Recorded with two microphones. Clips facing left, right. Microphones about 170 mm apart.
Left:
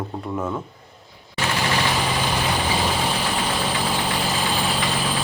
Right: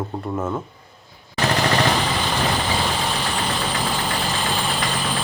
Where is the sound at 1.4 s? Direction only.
40° right (ahead or behind).